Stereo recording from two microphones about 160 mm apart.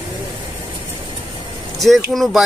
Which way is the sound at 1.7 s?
Centre (ahead or behind).